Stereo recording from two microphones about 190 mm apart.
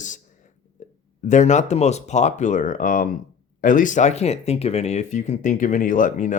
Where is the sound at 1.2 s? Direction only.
40° left (ahead or behind).